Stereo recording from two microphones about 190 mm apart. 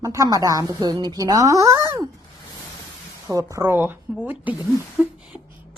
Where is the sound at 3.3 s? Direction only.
15° right (ahead or behind).